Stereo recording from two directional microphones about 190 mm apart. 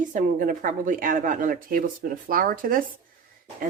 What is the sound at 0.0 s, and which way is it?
Speech, 45° right (ahead or behind).